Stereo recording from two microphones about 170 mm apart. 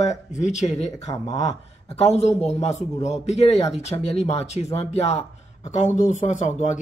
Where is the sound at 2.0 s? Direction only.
40° left (ahead or behind).